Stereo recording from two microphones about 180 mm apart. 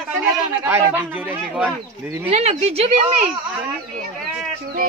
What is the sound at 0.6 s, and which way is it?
Speech, 15° right (ahead or behind).